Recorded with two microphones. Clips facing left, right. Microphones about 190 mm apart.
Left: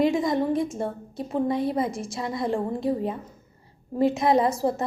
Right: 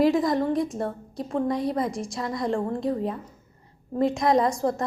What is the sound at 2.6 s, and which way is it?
Speech, 15° left (ahead or behind).